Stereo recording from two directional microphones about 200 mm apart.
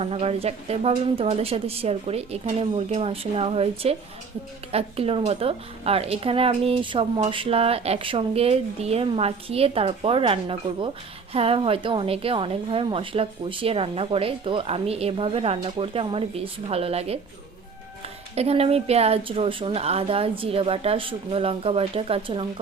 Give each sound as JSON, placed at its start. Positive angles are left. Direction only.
{"t": 0.0, "sound": "speech", "side_deg": -30}
{"t": 18.3, "sound": "speech", "side_deg": -30}